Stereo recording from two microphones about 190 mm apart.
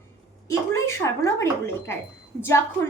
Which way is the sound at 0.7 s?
15° left (ahead or behind).